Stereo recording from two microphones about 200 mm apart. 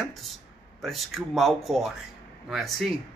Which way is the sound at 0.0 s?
Centre (ahead or behind).